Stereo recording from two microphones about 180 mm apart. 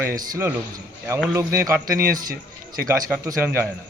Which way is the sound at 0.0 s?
15° right (ahead or behind).